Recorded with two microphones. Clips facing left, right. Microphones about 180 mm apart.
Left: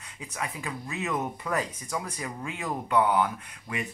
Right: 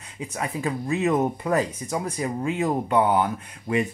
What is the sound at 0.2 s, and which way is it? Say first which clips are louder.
Speech: right 8 dB; 30° right (ahead or behind).